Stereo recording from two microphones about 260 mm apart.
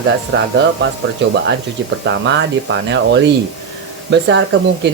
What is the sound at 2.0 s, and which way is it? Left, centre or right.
Speech, right.